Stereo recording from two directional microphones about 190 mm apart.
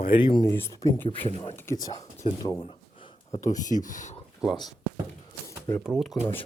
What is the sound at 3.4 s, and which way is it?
Speech, 40° left (ahead or behind).